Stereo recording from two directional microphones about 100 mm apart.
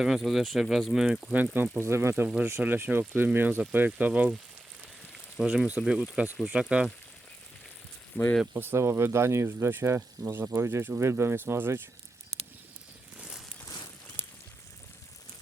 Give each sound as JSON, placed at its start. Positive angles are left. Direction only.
{"t": 0.0, "sound": "speech", "side_deg": 0}
{"t": 1.8, "sound": "speech", "side_deg": -25}
{"t": 8.1, "sound": "speech", "side_deg": 15}
{"t": 8.5, "sound": "speech", "side_deg": -25}
{"t": 13.1, "sound": "a sound", "side_deg": -10}
{"t": 13.7, "sound": "a sound", "side_deg": 40}